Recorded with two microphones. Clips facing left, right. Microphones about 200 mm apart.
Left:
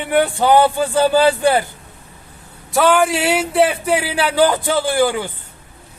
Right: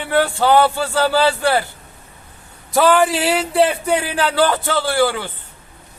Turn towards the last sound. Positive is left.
turn(degrees=15)  # may be behind; listen again after turning